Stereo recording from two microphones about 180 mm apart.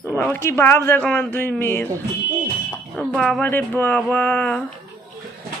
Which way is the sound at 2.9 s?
Centre (ahead or behind).